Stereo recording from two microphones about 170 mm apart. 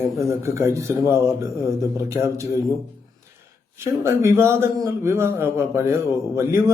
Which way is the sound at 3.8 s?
15° right (ahead or behind).